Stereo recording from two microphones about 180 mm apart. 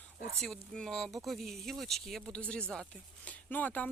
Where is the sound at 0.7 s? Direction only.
Centre (ahead or behind).